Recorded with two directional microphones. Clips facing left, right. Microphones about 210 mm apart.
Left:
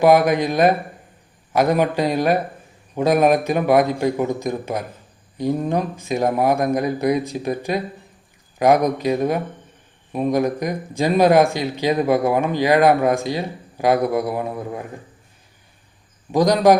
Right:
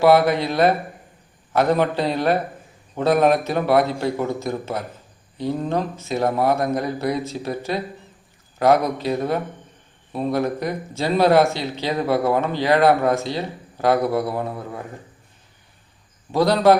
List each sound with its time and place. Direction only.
0.0 s speech: 15° left (ahead or behind)
16.3 s speech: 15° left (ahead or behind)